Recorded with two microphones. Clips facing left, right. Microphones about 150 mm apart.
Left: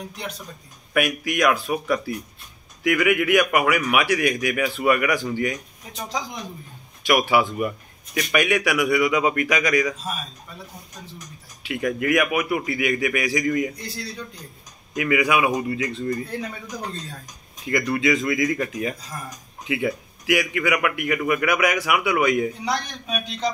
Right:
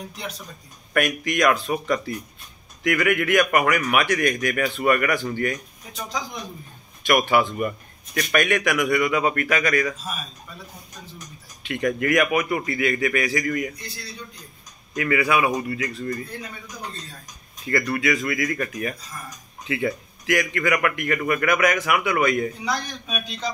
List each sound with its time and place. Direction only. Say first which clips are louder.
0.9 s a man's voice: even; 10° left (ahead or behind)
11.6 s a man's voice: even; 5° left (ahead or behind); by 13.7 s 20° left (ahead or behind)
15.0 s a man's voice: left 1 dB; 15° left (ahead or behind)
15.7 s speech: left 2 dB; 25° left (ahead or behind)
17.6 s a man's voice: left 2 dB; 15° left (ahead or behind)